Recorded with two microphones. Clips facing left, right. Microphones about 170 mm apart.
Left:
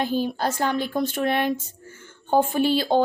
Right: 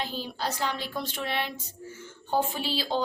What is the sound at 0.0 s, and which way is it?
A woman's voice, 50° left (ahead or behind).